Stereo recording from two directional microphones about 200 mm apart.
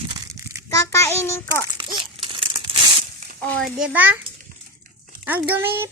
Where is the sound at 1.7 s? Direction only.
25° right (ahead or behind).